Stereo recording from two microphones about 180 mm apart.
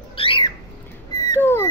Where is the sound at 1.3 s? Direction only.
15° left (ahead or behind).